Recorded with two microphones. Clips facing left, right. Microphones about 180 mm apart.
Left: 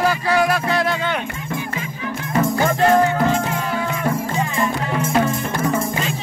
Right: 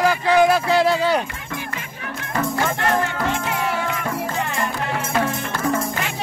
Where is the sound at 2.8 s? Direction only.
70° right (ahead or behind).